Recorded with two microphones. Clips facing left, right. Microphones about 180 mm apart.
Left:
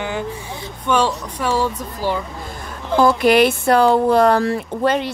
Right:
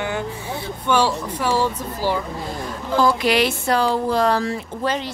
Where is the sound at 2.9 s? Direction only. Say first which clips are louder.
Left 5 dB; 55° left (ahead or behind).